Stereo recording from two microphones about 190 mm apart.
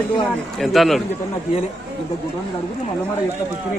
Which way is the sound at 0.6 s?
Centre (ahead or behind).